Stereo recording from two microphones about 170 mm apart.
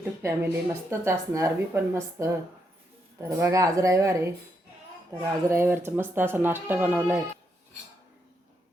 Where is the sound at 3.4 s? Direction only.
20° right (ahead or behind).